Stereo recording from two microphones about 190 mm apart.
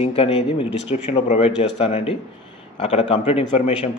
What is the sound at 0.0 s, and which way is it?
Speech, 30° left (ahead or behind).